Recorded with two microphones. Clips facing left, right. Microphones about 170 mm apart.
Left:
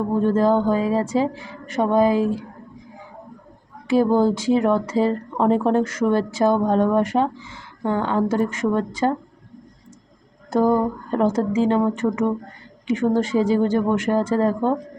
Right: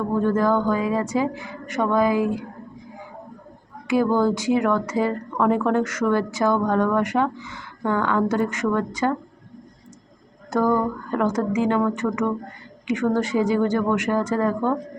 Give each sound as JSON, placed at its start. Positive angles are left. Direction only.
{"t": 0.1, "sound": "speech", "side_deg": 25}
{"t": 3.8, "sound": "speech", "side_deg": 30}
{"t": 10.5, "sound": "speech", "side_deg": 25}